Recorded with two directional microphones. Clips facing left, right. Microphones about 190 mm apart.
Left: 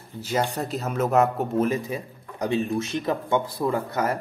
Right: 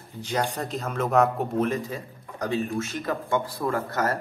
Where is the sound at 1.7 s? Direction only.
15° left (ahead or behind).